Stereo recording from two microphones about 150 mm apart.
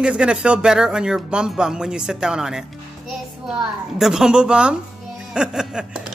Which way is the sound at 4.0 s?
5° right (ahead or behind).